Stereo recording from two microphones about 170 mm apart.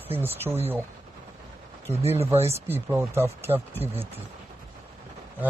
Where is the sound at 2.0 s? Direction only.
35° right (ahead or behind).